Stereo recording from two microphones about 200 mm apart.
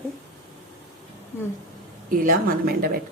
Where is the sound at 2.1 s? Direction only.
45° right (ahead or behind).